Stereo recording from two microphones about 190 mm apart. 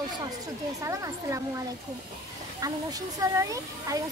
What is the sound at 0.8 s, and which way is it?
Speech, 15° right (ahead or behind).